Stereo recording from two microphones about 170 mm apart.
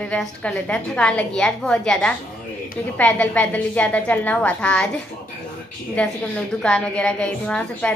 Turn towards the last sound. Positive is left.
turn(degrees=5)  # may be behind; listen again after turning